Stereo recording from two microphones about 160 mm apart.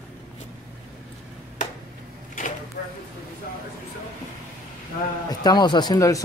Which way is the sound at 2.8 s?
85° left.